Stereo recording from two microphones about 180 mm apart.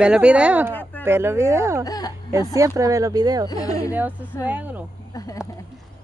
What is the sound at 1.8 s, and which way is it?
Speech, 20° left (ahead or behind).